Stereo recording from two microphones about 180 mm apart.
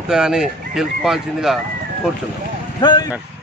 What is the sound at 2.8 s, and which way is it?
Speech, 25° left (ahead or behind).